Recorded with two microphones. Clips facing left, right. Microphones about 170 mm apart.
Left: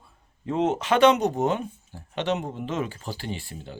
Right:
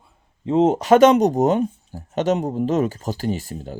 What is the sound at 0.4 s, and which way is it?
Speech, 30° right (ahead or behind).